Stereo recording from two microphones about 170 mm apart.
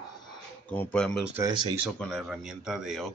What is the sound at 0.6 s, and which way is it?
Speech, 10° left (ahead or behind).